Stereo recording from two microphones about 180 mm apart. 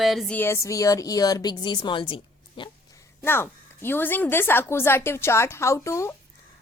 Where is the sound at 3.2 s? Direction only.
10° left (ahead or behind).